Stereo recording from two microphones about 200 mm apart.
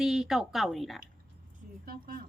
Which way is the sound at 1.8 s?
45° right (ahead or behind).